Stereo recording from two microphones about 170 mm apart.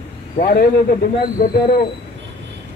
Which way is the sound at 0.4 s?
55° left (ahead or behind).